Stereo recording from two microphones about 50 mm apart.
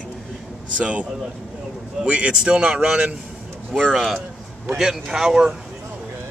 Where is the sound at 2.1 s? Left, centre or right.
Right.